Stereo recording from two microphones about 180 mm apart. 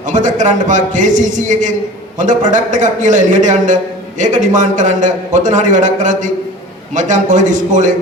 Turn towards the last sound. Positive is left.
turn(degrees=-45)  # may be behind; listen again after turning